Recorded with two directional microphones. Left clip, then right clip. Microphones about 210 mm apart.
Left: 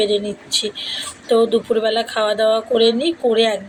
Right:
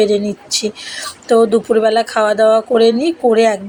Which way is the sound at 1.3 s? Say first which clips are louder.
Right 4 dB; 35° right (ahead or behind).